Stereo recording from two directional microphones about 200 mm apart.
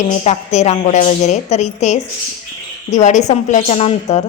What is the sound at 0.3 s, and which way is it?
A woman's voice, 35° left (ahead or behind).